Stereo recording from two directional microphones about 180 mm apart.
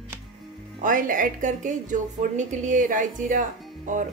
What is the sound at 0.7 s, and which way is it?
A woman's voice, 50° right (ahead or behind).